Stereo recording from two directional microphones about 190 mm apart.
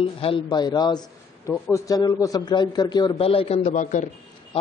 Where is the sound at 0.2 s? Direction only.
25° left (ahead or behind).